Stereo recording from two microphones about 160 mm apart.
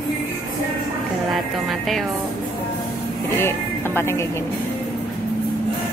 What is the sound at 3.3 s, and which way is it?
Music, 15° left (ahead or behind).